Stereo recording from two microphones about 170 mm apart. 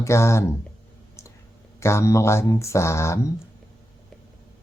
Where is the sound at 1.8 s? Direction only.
15° left (ahead or behind).